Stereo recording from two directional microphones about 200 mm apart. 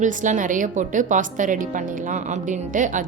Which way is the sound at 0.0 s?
40° right (ahead or behind).